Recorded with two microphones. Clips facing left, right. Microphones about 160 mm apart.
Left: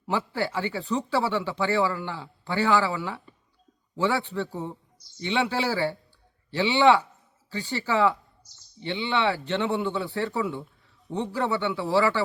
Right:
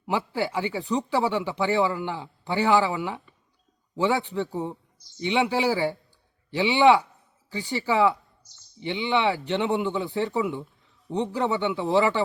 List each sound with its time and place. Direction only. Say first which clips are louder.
0.0 s speech: right 1 dB; 15° right (ahead or behind)